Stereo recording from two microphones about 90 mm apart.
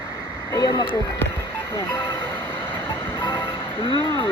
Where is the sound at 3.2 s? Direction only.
65° left (ahead or behind).